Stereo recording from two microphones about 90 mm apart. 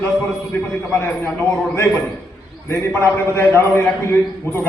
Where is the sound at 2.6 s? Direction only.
30° left (ahead or behind).